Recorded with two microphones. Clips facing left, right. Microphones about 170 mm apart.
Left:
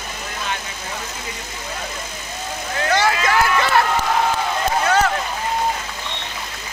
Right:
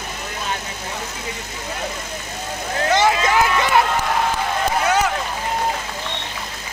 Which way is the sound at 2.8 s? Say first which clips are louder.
Right 2 dB; 20° right (ahead or behind).